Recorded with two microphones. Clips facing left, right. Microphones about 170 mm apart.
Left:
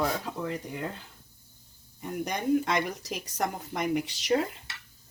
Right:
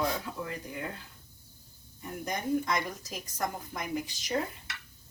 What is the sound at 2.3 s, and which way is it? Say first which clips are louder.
Speech: left 3 dB; 75° left (ahead or behind).